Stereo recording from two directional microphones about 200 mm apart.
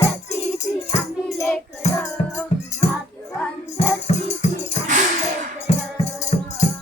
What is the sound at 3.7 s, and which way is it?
Music, 30° left (ahead or behind).